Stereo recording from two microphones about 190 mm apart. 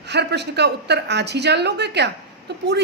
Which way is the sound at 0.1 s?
60° right (ahead or behind).